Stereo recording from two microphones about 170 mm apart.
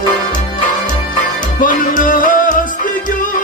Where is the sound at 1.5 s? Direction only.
50° left (ahead or behind).